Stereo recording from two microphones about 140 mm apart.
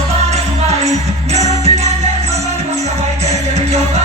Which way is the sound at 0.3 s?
50° right (ahead or behind).